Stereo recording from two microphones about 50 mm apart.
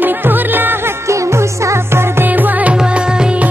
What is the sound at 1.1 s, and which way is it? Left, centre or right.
Music, right.